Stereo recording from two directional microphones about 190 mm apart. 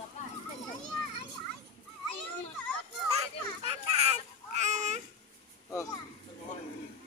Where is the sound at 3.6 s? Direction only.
35° right (ahead or behind).